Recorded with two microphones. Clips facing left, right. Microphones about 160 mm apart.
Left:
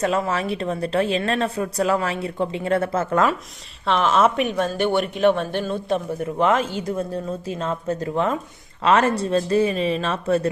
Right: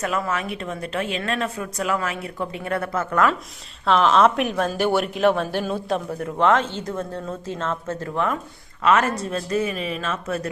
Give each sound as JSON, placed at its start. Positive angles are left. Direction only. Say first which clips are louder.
{"t": 0.0, "sound": "a woman's voice", "louder": "left 3 dB", "side_deg": 30}
{"t": 3.8, "sound": "a woman's voice", "louder": "right 1 dB", "side_deg": 0}